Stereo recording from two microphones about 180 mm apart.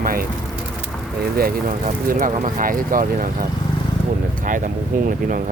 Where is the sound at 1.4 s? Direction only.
55° right (ahead or behind).